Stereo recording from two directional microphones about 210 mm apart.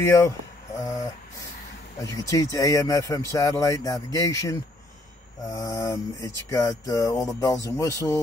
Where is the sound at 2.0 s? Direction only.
15° left (ahead or behind).